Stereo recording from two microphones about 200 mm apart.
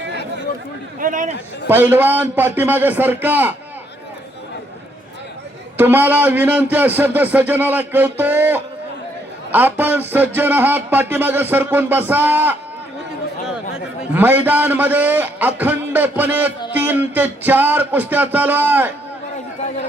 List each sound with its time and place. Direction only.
0.9 s a man's voice: 40° right (ahead or behind)
1.6 s a man's voice: 10° right (ahead or behind)
5.7 s a man's voice: 10° right (ahead or behind)
14.1 s a man's voice: 10° right (ahead or behind)